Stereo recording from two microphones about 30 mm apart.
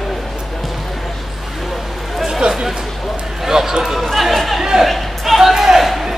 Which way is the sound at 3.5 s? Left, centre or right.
Centre.